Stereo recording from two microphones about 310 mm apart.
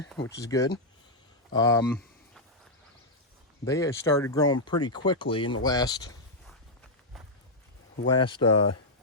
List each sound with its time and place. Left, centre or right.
0.4 s speech: centre
3.7 s speech: centre
8.0 s speech: centre